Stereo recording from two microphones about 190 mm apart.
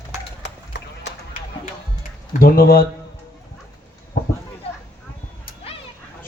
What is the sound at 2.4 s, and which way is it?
Speech, 50° left (ahead or behind).